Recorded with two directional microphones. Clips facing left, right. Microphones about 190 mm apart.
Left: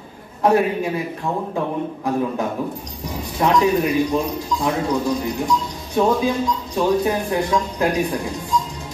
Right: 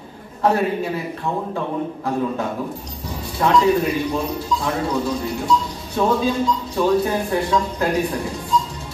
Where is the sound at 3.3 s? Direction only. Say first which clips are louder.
Right 1 dB; 15° left (ahead or behind).